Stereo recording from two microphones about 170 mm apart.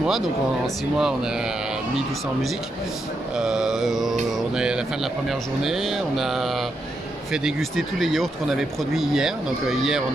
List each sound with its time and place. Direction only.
0.9 s mantra: 5° right (ahead or behind)
3.3 s mantra: 5° right (ahead or behind)